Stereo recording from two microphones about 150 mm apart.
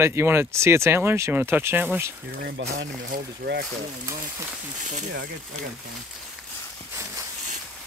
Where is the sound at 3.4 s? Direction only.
90° right.